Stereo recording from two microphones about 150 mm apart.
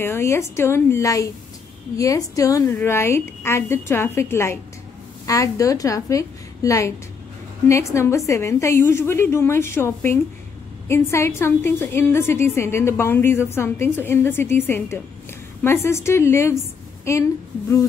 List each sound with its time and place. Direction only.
0.0 s a woman's voice: 15° left (ahead or behind)